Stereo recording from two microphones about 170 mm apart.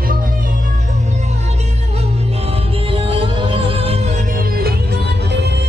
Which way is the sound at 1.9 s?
35° right (ahead or behind).